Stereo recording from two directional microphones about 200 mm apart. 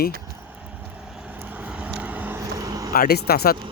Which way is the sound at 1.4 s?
10° right (ahead or behind).